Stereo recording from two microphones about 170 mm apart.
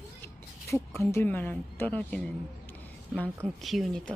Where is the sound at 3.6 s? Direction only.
Centre (ahead or behind).